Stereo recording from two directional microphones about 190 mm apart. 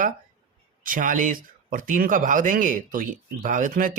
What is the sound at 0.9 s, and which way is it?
Speech, 45° right (ahead or behind).